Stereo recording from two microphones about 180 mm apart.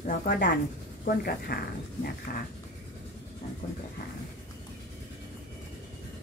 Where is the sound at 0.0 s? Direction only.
45° left (ahead or behind).